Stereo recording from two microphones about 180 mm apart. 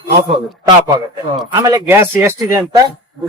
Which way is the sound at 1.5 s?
20° right (ahead or behind).